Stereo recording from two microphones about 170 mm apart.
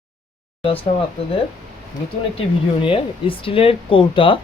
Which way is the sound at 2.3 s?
30° left (ahead or behind).